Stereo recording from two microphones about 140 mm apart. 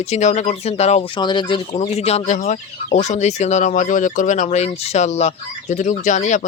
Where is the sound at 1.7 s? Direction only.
45° left (ahead or behind).